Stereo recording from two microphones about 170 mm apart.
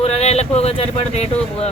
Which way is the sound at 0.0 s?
40° left (ahead or behind).